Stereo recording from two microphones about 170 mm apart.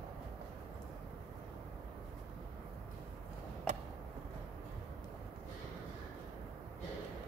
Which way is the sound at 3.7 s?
45° right (ahead or behind).